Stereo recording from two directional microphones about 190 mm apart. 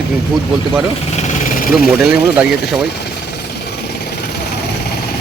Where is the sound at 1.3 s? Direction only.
45° left (ahead or behind).